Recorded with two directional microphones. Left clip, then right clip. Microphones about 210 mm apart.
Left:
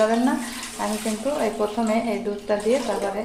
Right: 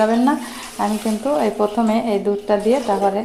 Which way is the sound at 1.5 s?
35° right (ahead or behind).